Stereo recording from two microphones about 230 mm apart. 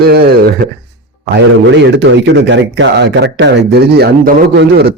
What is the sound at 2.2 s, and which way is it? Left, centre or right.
Speech, right.